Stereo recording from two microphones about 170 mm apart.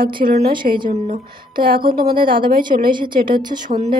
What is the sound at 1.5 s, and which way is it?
Speech, 30° right (ahead or behind).